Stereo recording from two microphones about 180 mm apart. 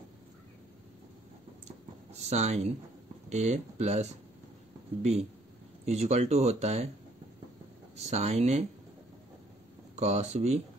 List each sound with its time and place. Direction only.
2.1 s speech: 40° right (ahead or behind)
5.9 s speech: 35° right (ahead or behind)
7.9 s speech: 35° right (ahead or behind)
9.9 s speech: 35° right (ahead or behind)